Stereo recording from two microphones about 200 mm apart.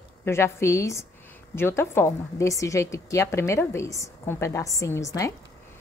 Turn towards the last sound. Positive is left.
turn(degrees=15)  # may be behind; listen again after turning